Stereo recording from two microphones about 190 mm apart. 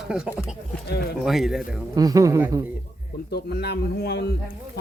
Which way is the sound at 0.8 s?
60° left (ahead or behind).